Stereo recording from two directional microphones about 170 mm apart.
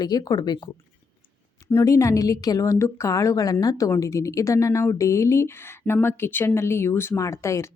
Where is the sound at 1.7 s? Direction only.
15° left (ahead or behind).